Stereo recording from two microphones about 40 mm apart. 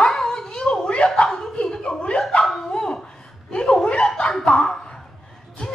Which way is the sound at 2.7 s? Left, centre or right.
Centre.